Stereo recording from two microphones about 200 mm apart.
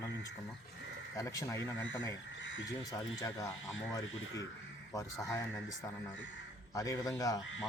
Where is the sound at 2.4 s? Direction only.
70° left (ahead or behind).